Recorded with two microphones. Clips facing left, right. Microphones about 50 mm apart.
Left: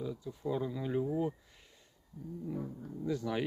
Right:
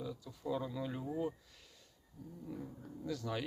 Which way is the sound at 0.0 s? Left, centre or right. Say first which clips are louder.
Left 5 dB; centre.